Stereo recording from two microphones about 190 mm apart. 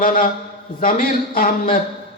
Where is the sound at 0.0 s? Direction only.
45° left (ahead or behind).